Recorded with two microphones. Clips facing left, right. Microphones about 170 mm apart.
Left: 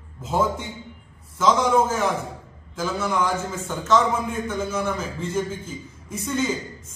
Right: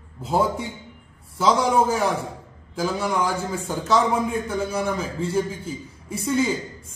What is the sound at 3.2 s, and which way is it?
A man's voice, 35° right (ahead or behind).